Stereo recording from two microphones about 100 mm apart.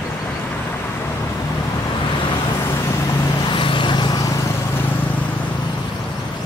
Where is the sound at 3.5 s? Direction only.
60° left (ahead or behind).